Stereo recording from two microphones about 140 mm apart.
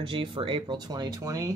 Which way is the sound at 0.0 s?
35° right (ahead or behind).